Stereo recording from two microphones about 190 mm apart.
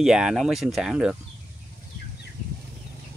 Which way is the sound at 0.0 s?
5° right (ahead or behind).